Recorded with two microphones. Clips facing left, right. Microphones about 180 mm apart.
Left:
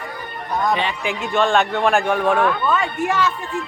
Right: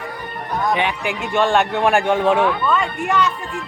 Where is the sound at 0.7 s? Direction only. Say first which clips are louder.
Right 1 dB; 15° right (ahead or behind).